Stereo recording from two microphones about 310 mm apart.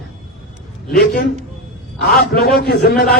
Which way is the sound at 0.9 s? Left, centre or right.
Left.